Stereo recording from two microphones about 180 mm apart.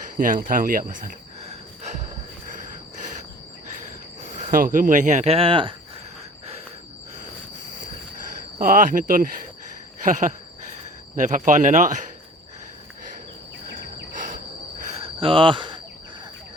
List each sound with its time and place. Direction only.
0.2 s speech: 50° right (ahead or behind)
4.5 s speech: 50° right (ahead or behind); by 5.7 s 30° right (ahead or behind)
8.5 s speech: 50° right (ahead or behind)
14.1 s insect: 45° right (ahead or behind)
15.0 s cricket: 30° right (ahead or behind)